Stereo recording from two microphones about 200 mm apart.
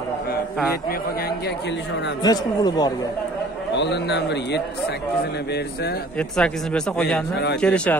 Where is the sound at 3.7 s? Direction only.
60° left (ahead or behind).